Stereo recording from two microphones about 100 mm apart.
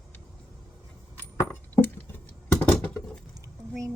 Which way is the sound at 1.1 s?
20° left (ahead or behind).